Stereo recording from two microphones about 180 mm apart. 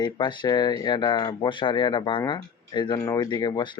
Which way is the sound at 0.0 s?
25° left (ahead or behind).